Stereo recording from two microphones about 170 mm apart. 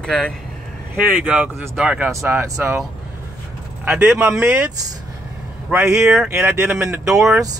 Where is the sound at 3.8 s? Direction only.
10° right (ahead or behind).